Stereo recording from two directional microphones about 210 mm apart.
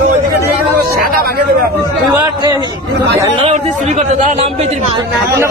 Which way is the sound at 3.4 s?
30° right (ahead or behind).